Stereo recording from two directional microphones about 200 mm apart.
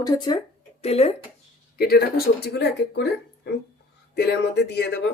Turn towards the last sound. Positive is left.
turn(degrees=60)  # may be behind; listen again after turning